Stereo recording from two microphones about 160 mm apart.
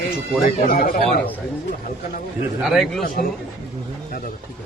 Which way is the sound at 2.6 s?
Centre (ahead or behind).